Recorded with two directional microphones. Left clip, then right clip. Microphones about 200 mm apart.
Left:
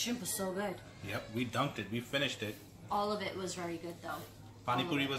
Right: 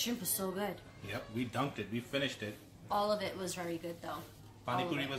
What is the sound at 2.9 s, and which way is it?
Speech, 55° right (ahead or behind).